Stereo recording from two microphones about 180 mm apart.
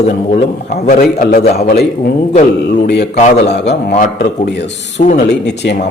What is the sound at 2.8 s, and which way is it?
A man's voice, 65° left (ahead or behind).